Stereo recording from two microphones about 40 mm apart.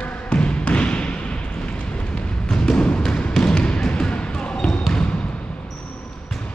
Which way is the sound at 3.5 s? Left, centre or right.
Left.